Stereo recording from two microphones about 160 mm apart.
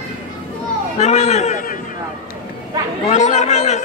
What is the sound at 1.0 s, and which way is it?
Speech, 45° left (ahead or behind).